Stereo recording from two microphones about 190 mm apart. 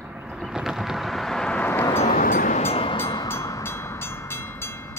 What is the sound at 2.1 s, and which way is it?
Vehicle, 45° left (ahead or behind).